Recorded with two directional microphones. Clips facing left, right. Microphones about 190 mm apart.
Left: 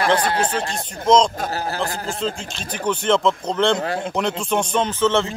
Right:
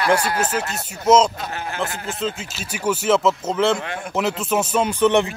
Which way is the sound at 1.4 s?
35° left (ahead or behind).